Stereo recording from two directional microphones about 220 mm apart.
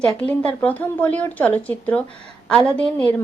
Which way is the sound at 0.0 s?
5° left (ahead or behind).